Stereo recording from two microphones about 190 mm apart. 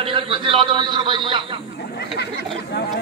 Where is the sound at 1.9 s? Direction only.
60° left (ahead or behind).